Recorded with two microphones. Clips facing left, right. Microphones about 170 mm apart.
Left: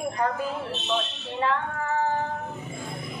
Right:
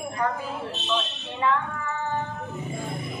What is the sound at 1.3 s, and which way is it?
Child singing, 40° left (ahead or behind).